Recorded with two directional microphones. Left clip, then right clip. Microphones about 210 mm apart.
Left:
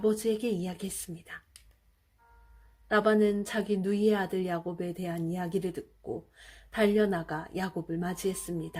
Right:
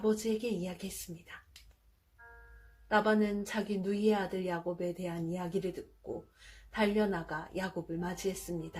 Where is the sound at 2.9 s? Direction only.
55° left (ahead or behind).